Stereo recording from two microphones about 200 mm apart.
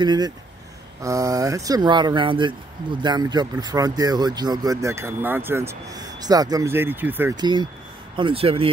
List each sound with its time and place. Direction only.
0.0 s speech: 20° right (ahead or behind)
7.3 s speech: 20° right (ahead or behind)